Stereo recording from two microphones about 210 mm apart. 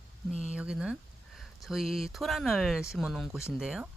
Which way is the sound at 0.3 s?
5° right (ahead or behind).